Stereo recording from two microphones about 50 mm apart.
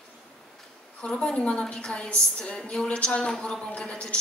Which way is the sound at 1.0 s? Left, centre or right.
Centre.